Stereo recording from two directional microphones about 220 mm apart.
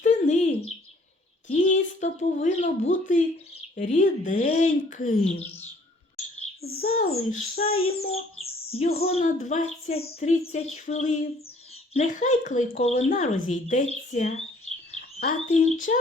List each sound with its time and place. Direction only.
0.0 s bird: 30° left (ahead or behind)
1.5 s speech: 35° left (ahead or behind)
6.6 s speech: 45° left (ahead or behind)
6.8 s a child's voice: 30° left (ahead or behind)
15.4 s speech: 30° left (ahead or behind)